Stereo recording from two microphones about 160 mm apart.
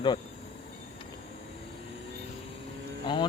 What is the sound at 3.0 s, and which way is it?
Speech, 30° left (ahead or behind).